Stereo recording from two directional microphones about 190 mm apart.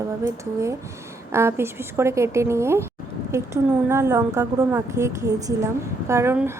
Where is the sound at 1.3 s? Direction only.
15° right (ahead or behind).